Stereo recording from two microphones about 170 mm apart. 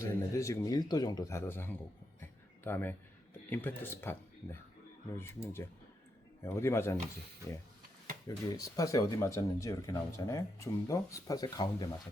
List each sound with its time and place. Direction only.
0.0 s speech: 15° left (ahead or behind)
2.2 s a sound: 10° left (ahead or behind)
3.5 s speech: 10° left (ahead or behind)
8.4 s speech: 20° left (ahead or behind)